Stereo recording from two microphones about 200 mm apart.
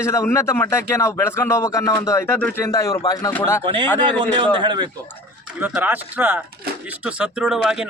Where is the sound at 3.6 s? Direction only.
25° right (ahead or behind).